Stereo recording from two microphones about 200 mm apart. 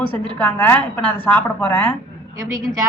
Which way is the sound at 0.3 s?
10° left (ahead or behind).